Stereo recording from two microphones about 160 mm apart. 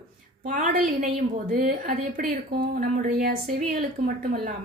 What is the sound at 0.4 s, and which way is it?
A woman's voice, 55° right (ahead or behind).